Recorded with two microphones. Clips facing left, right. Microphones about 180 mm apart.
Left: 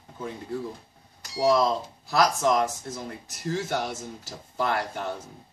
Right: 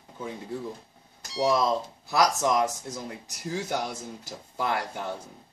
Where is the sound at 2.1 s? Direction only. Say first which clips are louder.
Left 1 dB; 20° right (ahead or behind).